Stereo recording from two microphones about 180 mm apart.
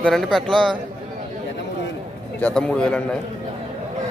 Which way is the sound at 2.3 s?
5° left (ahead or behind).